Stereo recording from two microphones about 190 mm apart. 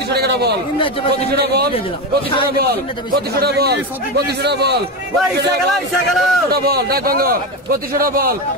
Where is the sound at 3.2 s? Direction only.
55° right (ahead or behind).